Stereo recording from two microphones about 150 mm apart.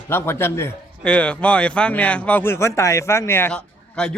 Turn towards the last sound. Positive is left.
turn(degrees=5)  # may be behind; listen again after turning